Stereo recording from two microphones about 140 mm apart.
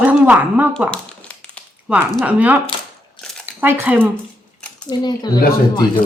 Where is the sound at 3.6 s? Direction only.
15° right (ahead or behind).